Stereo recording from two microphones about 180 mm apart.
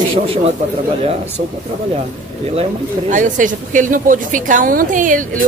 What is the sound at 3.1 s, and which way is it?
A woman's voice, 45° right (ahead or behind).